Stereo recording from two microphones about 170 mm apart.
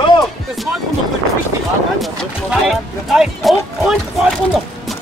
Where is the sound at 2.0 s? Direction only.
Centre (ahead or behind).